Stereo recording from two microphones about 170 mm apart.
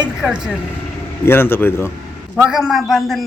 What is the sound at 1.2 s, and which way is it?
Speech, 15° left (ahead or behind).